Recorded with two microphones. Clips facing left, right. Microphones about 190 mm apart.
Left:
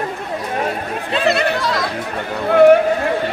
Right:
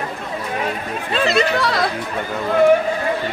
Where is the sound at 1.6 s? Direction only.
65° right (ahead or behind).